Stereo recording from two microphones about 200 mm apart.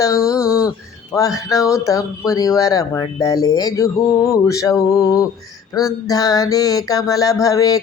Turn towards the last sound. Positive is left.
turn(degrees=15)  # may be behind; listen again after turning